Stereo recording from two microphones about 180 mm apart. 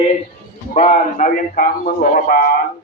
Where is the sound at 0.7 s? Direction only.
40° left (ahead or behind).